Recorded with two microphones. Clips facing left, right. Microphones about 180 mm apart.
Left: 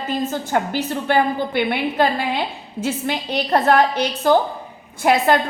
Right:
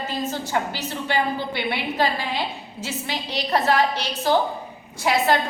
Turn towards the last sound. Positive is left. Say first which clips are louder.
# left 4 dB
turn(degrees=55)  # may be behind; listen again after turning